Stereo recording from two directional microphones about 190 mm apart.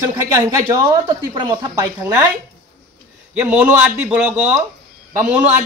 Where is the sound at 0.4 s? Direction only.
15° right (ahead or behind).